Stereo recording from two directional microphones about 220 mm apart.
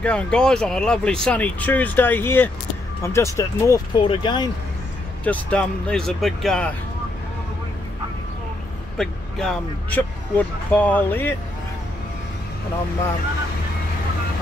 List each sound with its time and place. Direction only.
0.0 s speech: 5° left (ahead or behind); by 4.5 s 20° left (ahead or behind)
5.2 s speech: 5° left (ahead or behind)
8.9 s speech: centre (ahead or behind)